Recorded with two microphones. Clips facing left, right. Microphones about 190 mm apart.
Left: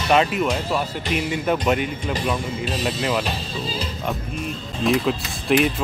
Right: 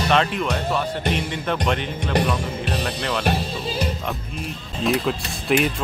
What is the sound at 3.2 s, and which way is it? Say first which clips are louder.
Music: right 3 dB; 60° right (ahead or behind).